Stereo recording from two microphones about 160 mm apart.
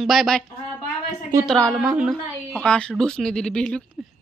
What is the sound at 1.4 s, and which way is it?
Speech, 5° left (ahead or behind).